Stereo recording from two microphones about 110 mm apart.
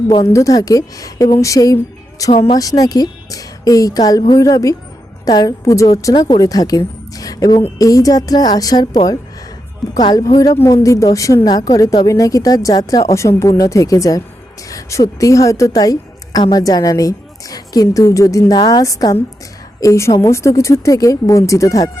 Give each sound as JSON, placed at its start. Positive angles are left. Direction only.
{"t": 0.3, "sound": "a woman's voice", "side_deg": 30}